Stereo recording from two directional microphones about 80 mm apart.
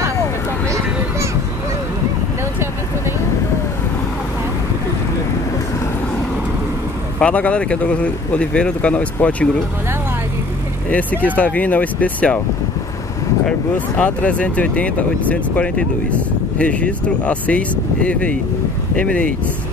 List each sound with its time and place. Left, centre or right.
7.2 s speech: centre
10.9 s speech: centre
13.7 s speech: left